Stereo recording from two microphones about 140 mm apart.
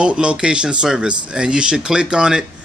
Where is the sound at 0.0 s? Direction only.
5° right (ahead or behind).